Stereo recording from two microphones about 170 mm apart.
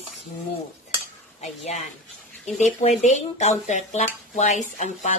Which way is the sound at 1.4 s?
45° left (ahead or behind).